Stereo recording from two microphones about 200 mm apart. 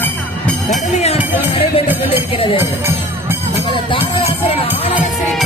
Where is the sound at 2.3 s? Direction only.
25° left (ahead or behind).